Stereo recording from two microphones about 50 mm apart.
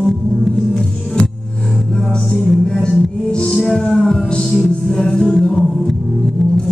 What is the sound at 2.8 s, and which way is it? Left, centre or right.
Music, centre.